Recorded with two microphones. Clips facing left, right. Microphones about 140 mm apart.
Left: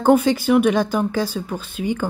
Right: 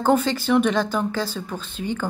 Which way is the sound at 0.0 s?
10° left (ahead or behind).